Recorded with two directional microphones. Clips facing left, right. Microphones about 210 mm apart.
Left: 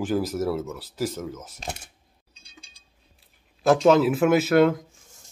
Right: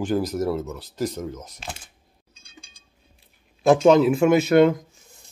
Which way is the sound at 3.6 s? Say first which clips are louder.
Right 2 dB; centre (ahead or behind).